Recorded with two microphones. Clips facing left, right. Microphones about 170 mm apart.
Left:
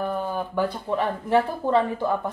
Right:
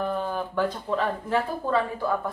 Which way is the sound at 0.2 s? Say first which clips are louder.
Left 1 dB; 15° left (ahead or behind).